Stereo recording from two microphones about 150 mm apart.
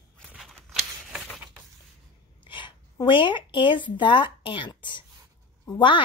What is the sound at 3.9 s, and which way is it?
A woman's voice, 30° left (ahead or behind).